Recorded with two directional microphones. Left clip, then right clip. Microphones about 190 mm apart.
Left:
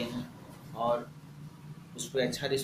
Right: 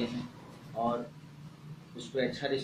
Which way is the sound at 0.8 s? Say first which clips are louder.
Left 1 dB; 10° left (ahead or behind).